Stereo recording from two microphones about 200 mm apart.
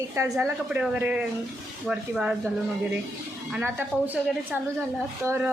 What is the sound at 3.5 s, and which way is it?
Speech, 10° right (ahead or behind).